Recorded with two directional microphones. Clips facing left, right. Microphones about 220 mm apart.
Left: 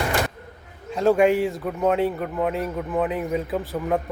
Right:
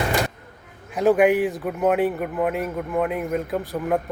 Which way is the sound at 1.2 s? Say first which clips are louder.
Right 1 dB; 15° right (ahead or behind).